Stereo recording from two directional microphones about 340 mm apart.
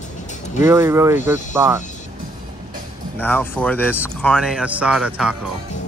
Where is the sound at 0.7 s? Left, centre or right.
Centre.